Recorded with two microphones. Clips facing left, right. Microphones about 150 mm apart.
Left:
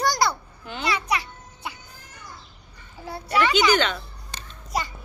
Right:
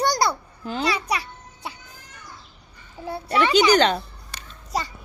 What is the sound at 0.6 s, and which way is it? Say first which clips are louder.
Speech: right 2 dB; 35° right (ahead or behind).